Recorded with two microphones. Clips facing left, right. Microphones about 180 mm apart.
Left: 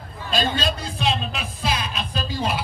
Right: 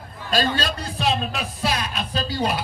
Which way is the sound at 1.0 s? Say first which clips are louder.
Right 5 dB; 40° right (ahead or behind).